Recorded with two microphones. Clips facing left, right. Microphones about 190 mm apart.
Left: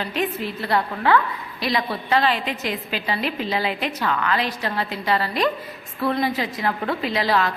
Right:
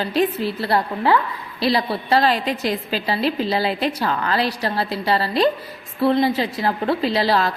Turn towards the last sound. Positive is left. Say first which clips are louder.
# right 3 dB
turn(degrees=-35)  # may be behind; listen again after turning